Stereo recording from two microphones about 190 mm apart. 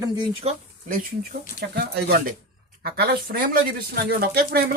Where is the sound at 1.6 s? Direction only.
60° right (ahead or behind).